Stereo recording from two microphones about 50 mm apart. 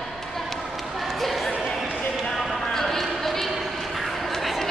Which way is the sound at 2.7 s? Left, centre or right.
Centre.